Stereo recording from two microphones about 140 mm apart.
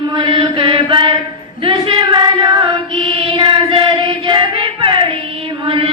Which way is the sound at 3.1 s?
35° right (ahead or behind).